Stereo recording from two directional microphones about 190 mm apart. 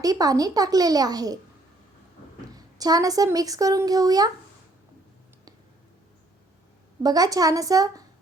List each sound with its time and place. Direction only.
0.0 s speech: 20° right (ahead or behind)
2.6 s speech: 20° right (ahead or behind)
7.0 s speech: 20° right (ahead or behind)